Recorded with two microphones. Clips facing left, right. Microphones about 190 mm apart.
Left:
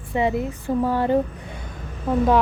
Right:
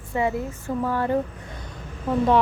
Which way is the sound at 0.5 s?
30° left (ahead or behind).